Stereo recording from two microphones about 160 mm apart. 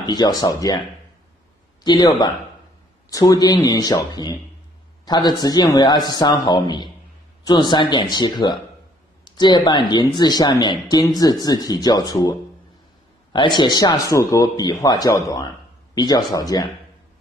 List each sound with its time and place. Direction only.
0.0 s speech: 25° left (ahead or behind)
1.9 s speech: 25° left (ahead or behind)